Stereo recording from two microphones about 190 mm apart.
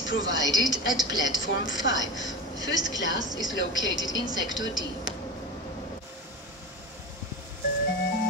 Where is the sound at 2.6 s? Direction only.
20° right (ahead or behind).